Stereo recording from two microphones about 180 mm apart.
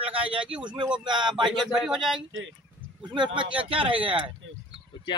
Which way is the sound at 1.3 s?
Centre (ahead or behind).